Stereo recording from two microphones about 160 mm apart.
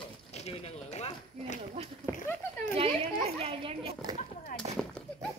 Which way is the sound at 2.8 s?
35° right (ahead or behind).